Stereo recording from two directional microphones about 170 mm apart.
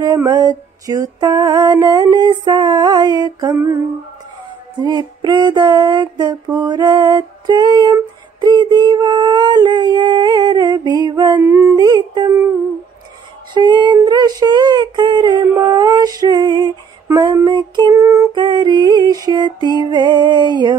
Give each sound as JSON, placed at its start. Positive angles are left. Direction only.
{"t": 0.0, "sound": "female singing", "side_deg": -20}
{"t": 4.8, "sound": "female singing", "side_deg": -25}
{"t": 11.4, "sound": "female singing", "side_deg": -10}
{"t": 11.8, "sound": "music", "side_deg": -25}
{"t": 13.5, "sound": "child singing", "side_deg": -25}
{"t": 18.3, "sound": "female singing", "side_deg": -25}